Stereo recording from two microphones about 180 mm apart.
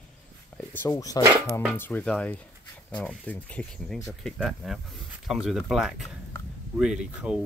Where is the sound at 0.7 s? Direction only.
20° left (ahead or behind).